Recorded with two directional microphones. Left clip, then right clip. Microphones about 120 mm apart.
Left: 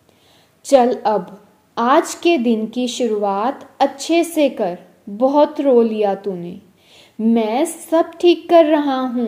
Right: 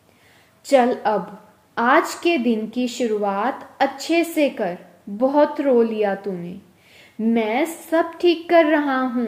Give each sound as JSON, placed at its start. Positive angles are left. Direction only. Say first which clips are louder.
{"t": 0.7, "sound": "a woman's voice", "louder": "left 3 dB", "side_deg": 30}